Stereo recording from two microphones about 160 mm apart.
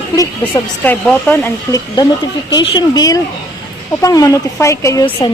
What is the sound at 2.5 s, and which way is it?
Speech, 25° left (ahead or behind).